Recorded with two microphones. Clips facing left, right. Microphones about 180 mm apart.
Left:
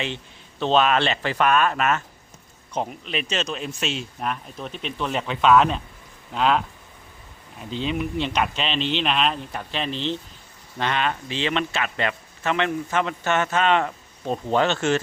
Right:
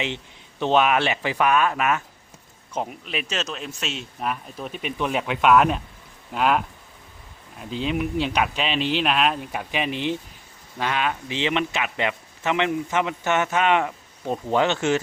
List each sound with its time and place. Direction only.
0.6 s speech: 15° right (ahead or behind)
7.6 s speech: 5° right (ahead or behind)